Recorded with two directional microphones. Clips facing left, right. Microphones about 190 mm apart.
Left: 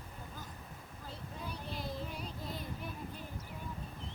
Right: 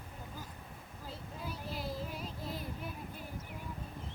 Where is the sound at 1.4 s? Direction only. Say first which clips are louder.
Right 1 dB; 5° right (ahead or behind).